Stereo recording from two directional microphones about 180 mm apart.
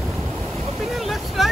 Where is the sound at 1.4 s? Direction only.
Centre (ahead or behind).